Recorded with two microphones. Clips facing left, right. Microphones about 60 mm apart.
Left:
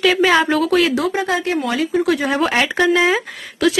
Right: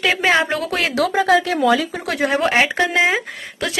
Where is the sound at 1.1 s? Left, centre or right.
Right.